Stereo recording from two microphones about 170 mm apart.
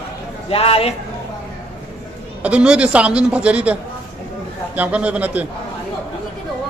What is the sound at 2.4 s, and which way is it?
A man's voice, 5° right (ahead or behind).